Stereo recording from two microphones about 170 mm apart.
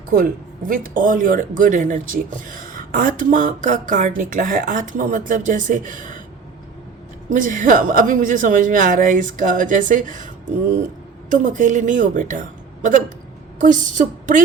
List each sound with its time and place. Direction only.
0.7 s speech: 55° right (ahead or behind)
7.3 s speech: 50° right (ahead or behind)